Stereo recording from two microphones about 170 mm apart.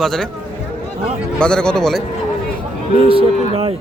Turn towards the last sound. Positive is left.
turn(degrees=-35)  # may be behind; listen again after turning